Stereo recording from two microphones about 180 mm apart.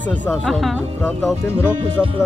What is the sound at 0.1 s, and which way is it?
Speech, 5° left (ahead or behind).